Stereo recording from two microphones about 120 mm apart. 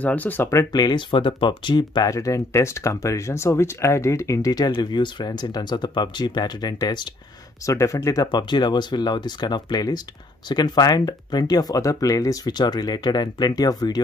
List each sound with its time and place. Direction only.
0.0 s speech: 10° left (ahead or behind); by 14.0 s 35° left (ahead or behind)